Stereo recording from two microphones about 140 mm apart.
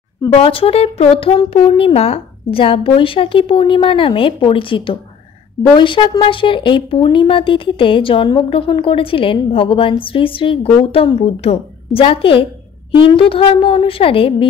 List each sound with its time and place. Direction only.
0.3 s speech: 40° left (ahead or behind)